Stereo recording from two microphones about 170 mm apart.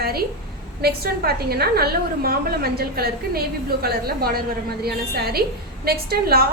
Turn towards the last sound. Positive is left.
turn(degrees=-65)  # may be behind; listen again after turning